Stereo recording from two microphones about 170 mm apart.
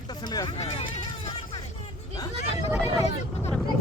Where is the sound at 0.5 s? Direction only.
35° left (ahead or behind).